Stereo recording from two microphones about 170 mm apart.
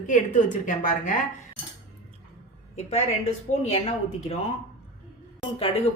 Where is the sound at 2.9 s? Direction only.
40° left (ahead or behind).